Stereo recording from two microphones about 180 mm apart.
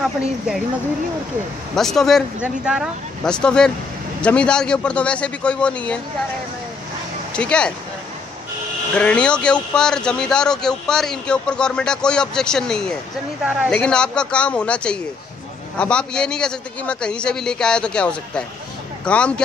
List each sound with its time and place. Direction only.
1.8 s a man's voice: centre (ahead or behind)
7.3 s speech: 5° left (ahead or behind)
8.9 s a man's voice: 5° left (ahead or behind)